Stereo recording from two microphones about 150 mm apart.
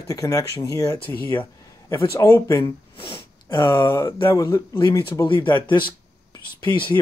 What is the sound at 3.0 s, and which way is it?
Speech, 35° left (ahead or behind).